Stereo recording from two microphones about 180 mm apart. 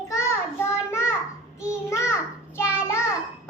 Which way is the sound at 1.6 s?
15° left (ahead or behind).